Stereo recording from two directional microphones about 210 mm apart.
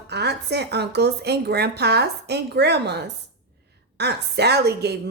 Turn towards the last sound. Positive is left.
turn(degrees=-50)  # may be behind; listen again after turning